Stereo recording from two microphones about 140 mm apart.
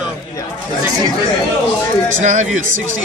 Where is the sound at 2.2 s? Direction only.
60° right (ahead or behind).